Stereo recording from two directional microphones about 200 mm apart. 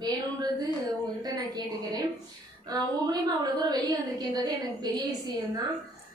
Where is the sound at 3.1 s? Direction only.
20° right (ahead or behind).